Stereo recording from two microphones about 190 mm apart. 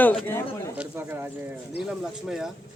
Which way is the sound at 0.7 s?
10° right (ahead or behind).